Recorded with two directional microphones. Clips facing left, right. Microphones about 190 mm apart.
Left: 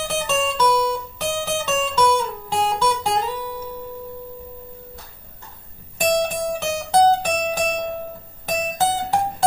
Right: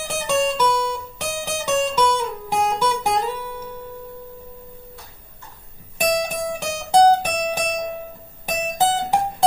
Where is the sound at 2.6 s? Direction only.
15° right (ahead or behind).